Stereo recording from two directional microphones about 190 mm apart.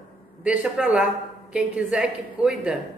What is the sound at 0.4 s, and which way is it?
A woman's voice, 5° right (ahead or behind).